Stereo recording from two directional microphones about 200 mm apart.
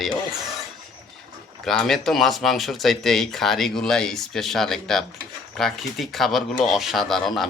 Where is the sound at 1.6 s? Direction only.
Centre (ahead or behind).